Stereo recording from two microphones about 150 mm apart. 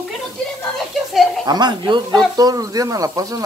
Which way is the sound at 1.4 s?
30° right (ahead or behind).